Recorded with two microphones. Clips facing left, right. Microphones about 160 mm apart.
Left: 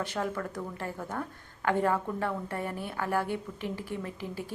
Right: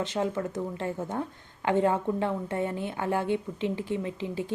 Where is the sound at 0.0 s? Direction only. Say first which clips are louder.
Right 4 dB; 20° right (ahead or behind).